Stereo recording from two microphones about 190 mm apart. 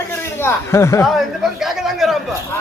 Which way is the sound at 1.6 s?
Centre (ahead or behind).